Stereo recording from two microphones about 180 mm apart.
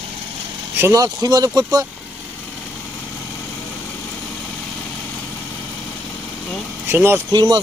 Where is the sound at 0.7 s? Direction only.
15° right (ahead or behind).